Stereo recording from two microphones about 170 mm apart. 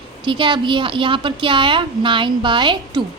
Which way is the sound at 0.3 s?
30° right (ahead or behind).